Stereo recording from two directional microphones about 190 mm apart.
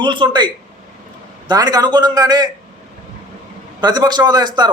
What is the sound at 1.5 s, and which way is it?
A man's voice, 20° right (ahead or behind).